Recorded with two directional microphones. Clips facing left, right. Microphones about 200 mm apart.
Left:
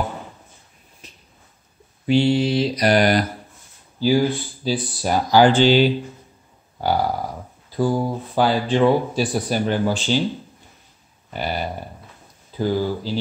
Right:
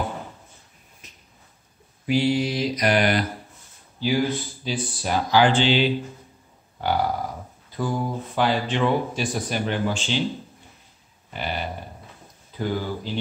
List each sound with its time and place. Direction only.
1.0 s a sound: 30° left (ahead or behind)
2.0 s mantra: 30° left (ahead or behind)
4.0 s speech: 35° left (ahead or behind)
7.7 s speech: 35° left (ahead or behind)
11.3 s speech: 40° left (ahead or behind)